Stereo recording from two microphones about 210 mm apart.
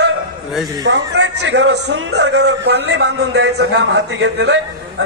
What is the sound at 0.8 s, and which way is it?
A man's voice, 55° right (ahead or behind).